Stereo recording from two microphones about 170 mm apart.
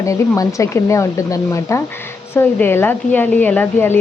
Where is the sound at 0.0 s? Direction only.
20° left (ahead or behind).